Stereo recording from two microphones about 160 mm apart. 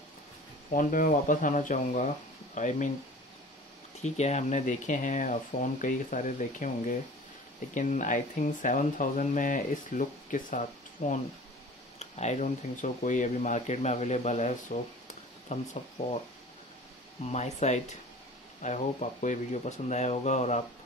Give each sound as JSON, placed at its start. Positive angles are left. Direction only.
{"t": 0.7, "sound": "speech", "side_deg": 55}
{"t": 4.0, "sound": "speech", "side_deg": 45}
{"t": 17.2, "sound": "speech", "side_deg": 45}